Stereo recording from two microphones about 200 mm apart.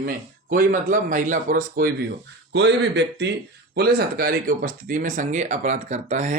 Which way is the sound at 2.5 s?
60° right (ahead or behind).